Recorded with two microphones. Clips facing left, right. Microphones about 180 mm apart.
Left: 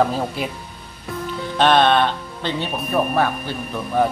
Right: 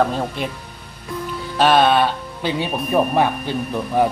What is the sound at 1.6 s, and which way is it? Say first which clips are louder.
Speech: right 1 dB; 5° right (ahead or behind).